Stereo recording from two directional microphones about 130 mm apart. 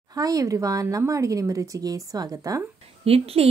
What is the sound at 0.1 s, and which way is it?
Speech, 30° right (ahead or behind).